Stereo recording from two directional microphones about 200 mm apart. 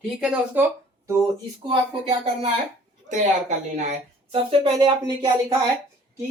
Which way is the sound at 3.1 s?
40° right (ahead or behind).